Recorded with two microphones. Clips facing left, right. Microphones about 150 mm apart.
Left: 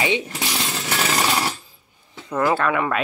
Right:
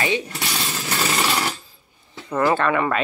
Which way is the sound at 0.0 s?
20° left (ahead or behind).